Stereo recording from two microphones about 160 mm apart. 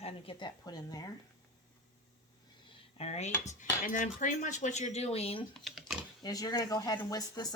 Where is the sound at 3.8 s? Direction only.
55° left (ahead or behind); by 5.4 s 40° left (ahead or behind).